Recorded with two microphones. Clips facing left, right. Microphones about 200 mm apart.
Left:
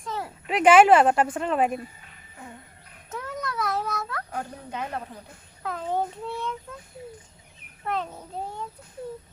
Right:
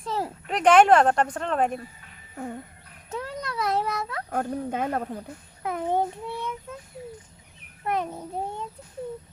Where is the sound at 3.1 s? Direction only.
30° right (ahead or behind).